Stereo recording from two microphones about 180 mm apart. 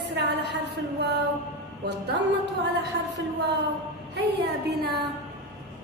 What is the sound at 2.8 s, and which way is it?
A woman's voice, 70° right (ahead or behind).